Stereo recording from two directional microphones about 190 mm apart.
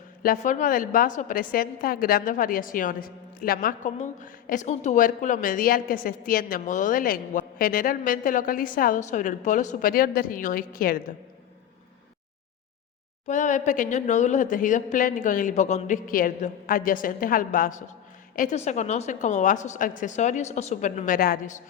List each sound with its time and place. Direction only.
0.2 s a woman's voice: 45° left (ahead or behind)
13.2 s a woman's voice: 40° left (ahead or behind)